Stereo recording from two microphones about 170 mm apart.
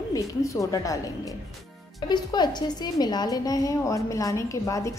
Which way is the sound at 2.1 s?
25° left (ahead or behind).